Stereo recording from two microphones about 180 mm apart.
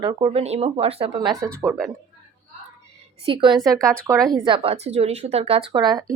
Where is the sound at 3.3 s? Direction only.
25° right (ahead or behind).